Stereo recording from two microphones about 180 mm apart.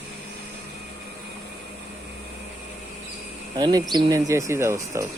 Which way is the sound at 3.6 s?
25° right (ahead or behind).